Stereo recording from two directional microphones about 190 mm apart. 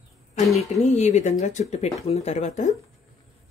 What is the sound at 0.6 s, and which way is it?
Speech, 40° left (ahead or behind).